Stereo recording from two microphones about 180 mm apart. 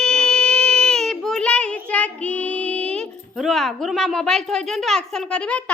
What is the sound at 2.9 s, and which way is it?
A woman's voice, centre (ahead or behind).